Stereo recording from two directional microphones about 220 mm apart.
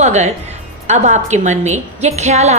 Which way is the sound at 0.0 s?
30° right (ahead or behind).